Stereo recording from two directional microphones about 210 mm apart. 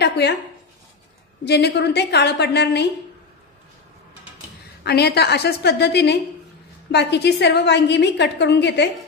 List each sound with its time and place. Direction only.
0.0 s speech: 55° left (ahead or behind)
1.4 s a woman's voice: 55° left (ahead or behind)
4.8 s a woman's voice: 50° left (ahead or behind)